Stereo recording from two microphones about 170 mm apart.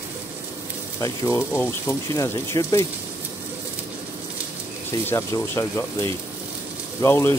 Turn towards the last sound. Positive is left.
turn(degrees=15)  # may be behind; listen again after turning